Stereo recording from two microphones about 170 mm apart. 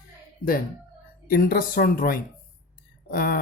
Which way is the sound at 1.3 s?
60° left (ahead or behind).